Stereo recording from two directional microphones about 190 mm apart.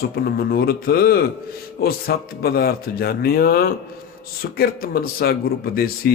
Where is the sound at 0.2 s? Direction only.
50° left (ahead or behind).